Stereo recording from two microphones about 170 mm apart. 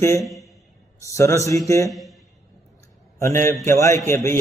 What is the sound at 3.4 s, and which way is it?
Speech, 15° left (ahead or behind).